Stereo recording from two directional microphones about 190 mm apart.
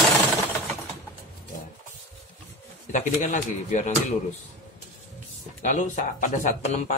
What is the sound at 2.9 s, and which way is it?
Speech, 40° left (ahead or behind).